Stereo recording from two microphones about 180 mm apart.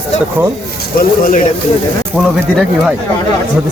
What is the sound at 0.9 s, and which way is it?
Speech, 50° left (ahead or behind).